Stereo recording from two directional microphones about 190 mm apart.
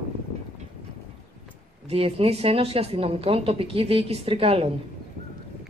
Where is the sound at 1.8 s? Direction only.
30° right (ahead or behind).